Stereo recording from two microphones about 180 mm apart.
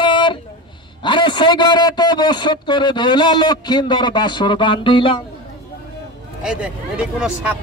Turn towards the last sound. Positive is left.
turn(degrees=-5)  # may be behind; listen again after turning